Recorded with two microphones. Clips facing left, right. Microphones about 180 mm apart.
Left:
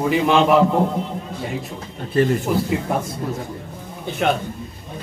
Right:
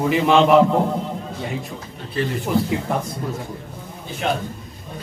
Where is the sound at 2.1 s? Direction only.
45° left (ahead or behind).